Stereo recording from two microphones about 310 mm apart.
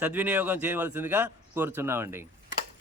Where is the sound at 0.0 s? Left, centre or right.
Centre.